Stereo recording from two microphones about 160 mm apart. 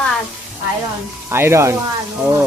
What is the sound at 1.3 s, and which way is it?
Speech, 15° right (ahead or behind).